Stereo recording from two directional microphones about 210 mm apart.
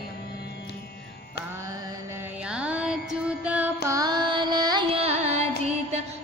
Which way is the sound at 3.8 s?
15° right (ahead or behind).